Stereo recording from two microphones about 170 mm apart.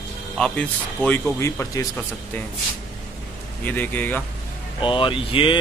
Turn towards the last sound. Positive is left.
turn(degrees=30)  # may be behind; listen again after turning